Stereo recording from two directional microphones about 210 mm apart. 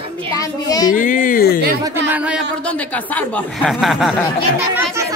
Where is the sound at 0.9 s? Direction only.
40° left (ahead or behind).